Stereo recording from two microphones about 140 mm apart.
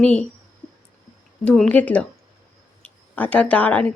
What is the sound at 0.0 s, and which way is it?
Speech, 5° left (ahead or behind).